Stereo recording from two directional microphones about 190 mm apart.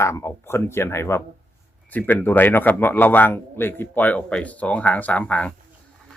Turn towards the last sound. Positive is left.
turn(degrees=5)  # may be behind; listen again after turning